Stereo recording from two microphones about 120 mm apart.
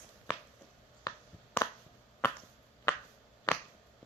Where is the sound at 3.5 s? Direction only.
35° left (ahead or behind).